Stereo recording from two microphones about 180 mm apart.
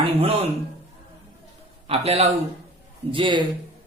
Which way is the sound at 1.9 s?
35° right (ahead or behind).